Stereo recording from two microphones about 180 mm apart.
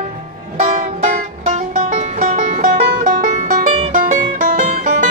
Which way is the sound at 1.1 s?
40° right (ahead or behind).